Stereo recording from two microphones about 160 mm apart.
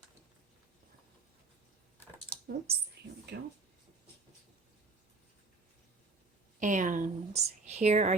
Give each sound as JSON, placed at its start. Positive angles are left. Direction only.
{"t": 2.3, "sound": "a sound", "side_deg": -80}
{"t": 3.0, "sound": "mouse", "side_deg": -90}
{"t": 6.6, "sound": "a woman's voice", "side_deg": -55}